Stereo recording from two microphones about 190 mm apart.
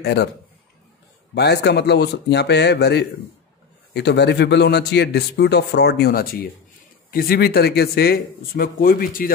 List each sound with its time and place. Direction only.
0.0 s a man's voice: 60° left (ahead or behind)
1.3 s a man's voice: 60° left (ahead or behind)